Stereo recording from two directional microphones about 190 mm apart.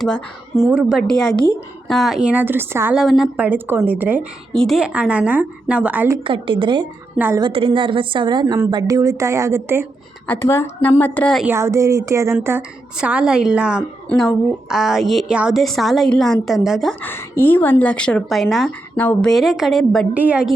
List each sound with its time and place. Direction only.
0.0 s a woman's voice: centre (ahead or behind)
3.0 s a woman's voice: centre (ahead or behind)
6.2 s a woman's voice: 25° right (ahead or behind)
10.2 s a woman's voice: 10° left (ahead or behind)
11.4 s a woman's voice: 15° right (ahead or behind)
17.0 s speech: 10° left (ahead or behind); by 20.5 s 5° right (ahead or behind)